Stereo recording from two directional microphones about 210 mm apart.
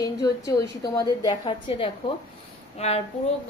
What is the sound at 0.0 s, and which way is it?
A woman's voice, 15° left (ahead or behind).